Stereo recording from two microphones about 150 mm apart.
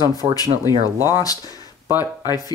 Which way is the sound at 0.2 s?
30° right (ahead or behind).